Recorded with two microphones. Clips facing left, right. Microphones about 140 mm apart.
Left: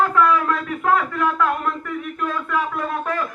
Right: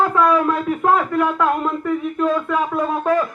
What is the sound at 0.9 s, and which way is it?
Speech, 20° right (ahead or behind).